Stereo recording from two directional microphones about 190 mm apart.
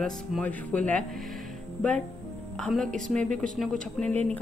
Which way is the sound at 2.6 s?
Centre (ahead or behind).